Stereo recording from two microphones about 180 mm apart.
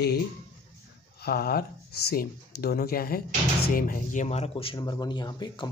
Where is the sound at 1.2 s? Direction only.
55° left (ahead or behind).